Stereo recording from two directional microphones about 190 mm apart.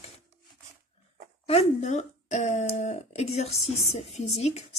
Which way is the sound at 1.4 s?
35° left (ahead or behind).